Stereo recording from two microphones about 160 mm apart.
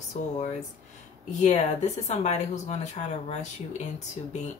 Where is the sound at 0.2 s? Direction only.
45° left (ahead or behind).